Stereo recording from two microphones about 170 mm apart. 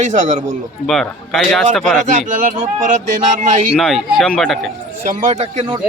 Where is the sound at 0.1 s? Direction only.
45° right (ahead or behind).